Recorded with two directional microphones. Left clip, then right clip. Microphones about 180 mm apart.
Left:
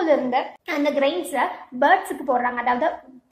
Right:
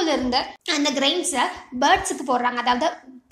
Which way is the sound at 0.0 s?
35° right (ahead or behind).